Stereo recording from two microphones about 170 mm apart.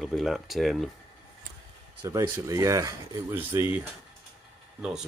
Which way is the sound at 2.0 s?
20° right (ahead or behind).